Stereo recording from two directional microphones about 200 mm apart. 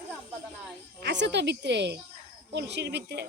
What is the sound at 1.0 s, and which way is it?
Speech, 60° right (ahead or behind).